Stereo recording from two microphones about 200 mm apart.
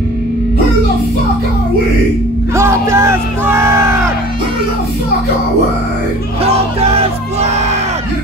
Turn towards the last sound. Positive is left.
turn(degrees=-30)  # may be behind; listen again after turning